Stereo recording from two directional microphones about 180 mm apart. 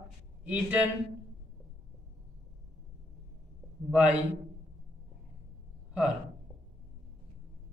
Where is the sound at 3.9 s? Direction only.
10° right (ahead or behind).